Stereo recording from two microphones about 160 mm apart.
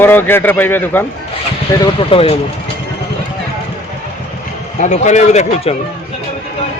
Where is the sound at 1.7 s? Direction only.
25° left (ahead or behind).